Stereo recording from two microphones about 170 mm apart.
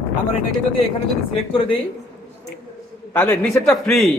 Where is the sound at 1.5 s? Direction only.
30° left (ahead or behind).